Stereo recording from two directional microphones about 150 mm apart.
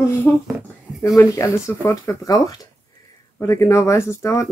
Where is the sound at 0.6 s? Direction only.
5° right (ahead or behind).